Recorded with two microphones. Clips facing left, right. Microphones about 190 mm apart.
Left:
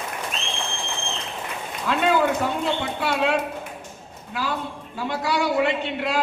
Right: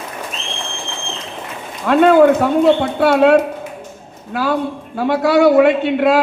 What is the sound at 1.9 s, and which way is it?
A man's voice, 55° right (ahead or behind).